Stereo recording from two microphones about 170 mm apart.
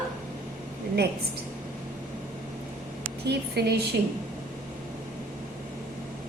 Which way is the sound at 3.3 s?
75° right (ahead or behind).